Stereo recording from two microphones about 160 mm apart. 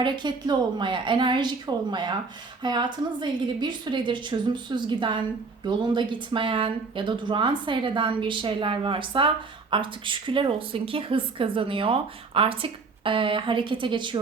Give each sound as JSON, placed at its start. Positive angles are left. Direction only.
{"t": 0.0, "sound": "a woman's voice", "side_deg": -30}